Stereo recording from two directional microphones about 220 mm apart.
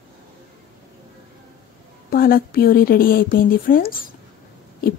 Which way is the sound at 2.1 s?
40° left (ahead or behind).